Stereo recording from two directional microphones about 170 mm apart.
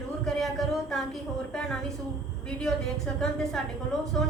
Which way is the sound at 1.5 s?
5° left (ahead or behind).